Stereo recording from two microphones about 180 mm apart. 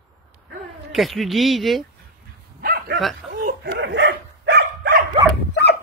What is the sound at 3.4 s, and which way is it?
Dog, 75° right (ahead or behind).